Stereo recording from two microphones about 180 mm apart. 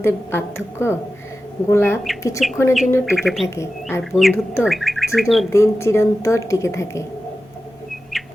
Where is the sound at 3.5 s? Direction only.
10° left (ahead or behind).